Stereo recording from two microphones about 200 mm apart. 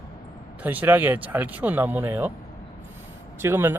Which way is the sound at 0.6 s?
10° right (ahead or behind).